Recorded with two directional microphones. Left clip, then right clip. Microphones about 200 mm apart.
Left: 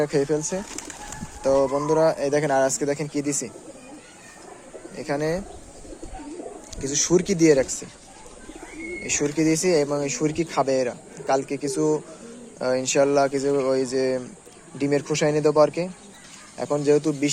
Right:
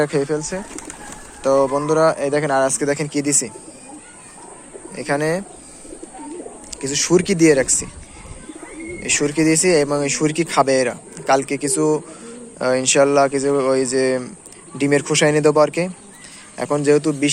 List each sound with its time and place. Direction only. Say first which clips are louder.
0.1 s speech: right 2 dB; 25° left (ahead or behind)
1.4 s speech: right 4 dB; 15° left (ahead or behind)
2.8 s speech: right 5 dB; 5° left (ahead or behind)
4.9 s speech: right 6 dB; 5° left (ahead or behind)
6.7 s speech: right 4 dB; 15° left (ahead or behind)
9.0 s speech: right 5 dB; 5° left (ahead or behind)